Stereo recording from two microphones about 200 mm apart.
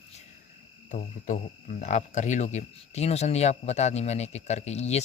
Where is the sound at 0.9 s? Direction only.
35° left (ahead or behind).